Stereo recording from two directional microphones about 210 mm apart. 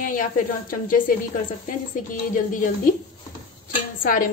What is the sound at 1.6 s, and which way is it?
A woman's voice, 40° left (ahead or behind).